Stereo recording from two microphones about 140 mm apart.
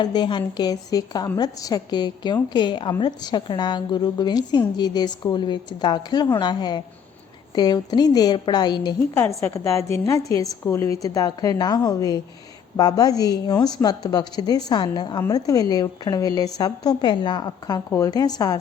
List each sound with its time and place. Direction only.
0.0 s a woman's voice: 30° left (ahead or behind)
9.4 s a woman's voice: 20° left (ahead or behind)